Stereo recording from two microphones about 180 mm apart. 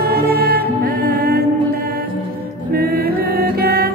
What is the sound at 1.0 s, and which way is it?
Mantra, 60° right (ahead or behind).